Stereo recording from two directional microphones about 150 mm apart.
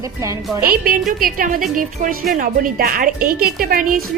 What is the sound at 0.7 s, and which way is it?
A woman's voice, 75° right (ahead or behind).